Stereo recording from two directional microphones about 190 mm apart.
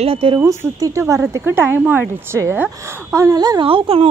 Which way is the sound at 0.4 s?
15° right (ahead or behind).